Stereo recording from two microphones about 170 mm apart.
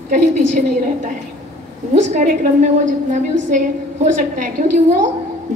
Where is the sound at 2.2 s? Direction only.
45° right (ahead or behind).